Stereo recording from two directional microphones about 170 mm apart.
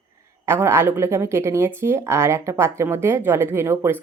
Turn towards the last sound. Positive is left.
turn(degrees=-15)  # may be behind; listen again after turning